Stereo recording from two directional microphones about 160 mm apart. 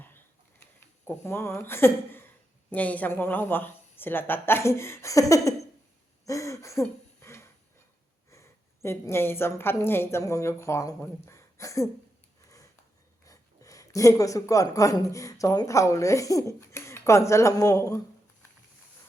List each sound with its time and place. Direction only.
1.0 s speech: 15° left (ahead or behind)
6.2 s a sound: 20° left (ahead or behind)
8.3 s a woman's voice: 15° left (ahead or behind)
13.2 s a man's voice: 20° left (ahead or behind)